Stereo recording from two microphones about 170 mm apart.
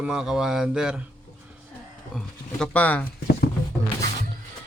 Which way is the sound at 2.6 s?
10° left (ahead or behind).